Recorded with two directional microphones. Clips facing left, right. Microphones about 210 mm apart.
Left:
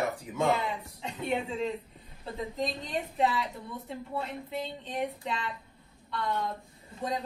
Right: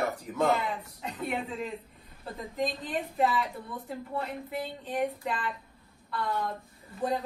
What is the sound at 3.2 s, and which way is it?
A woman's voice, centre (ahead or behind).